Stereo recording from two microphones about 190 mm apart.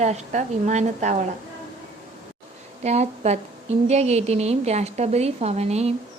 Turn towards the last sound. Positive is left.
turn(degrees=-35)  # may be behind; listen again after turning